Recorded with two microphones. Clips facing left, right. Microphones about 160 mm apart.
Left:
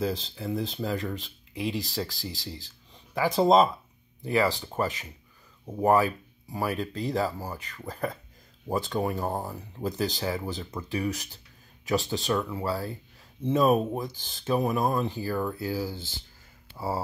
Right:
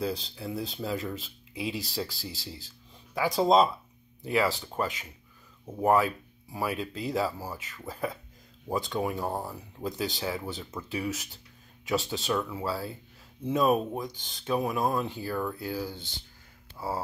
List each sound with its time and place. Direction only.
0.0 s speech: centre (ahead or behind)
9.3 s speech: 15° left (ahead or behind)
9.8 s speech: centre (ahead or behind)